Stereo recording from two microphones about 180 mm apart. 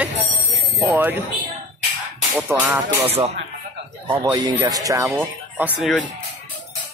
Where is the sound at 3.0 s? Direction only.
30° right (ahead or behind); by 5.9 s 10° right (ahead or behind).